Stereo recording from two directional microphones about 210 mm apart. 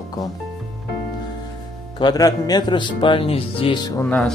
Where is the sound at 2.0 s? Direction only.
20° left (ahead or behind).